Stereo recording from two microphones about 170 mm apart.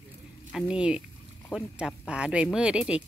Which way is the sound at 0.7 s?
5° right (ahead or behind).